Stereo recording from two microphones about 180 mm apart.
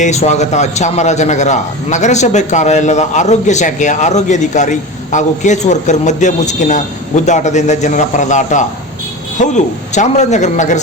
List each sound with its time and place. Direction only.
0.0 s a man's voice: 40° left (ahead or behind)